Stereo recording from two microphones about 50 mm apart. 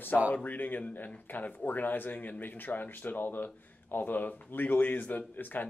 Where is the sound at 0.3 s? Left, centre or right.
Left.